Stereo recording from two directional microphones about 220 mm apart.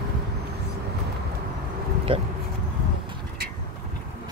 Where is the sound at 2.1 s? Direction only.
25° right (ahead or behind).